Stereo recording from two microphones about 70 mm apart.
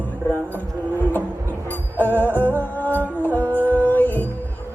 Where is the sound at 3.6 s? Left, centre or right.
Left.